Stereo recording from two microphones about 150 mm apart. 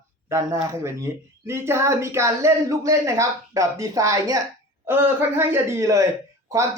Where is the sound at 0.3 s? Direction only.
20° right (ahead or behind).